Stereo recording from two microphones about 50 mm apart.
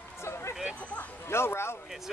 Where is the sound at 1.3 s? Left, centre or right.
Left.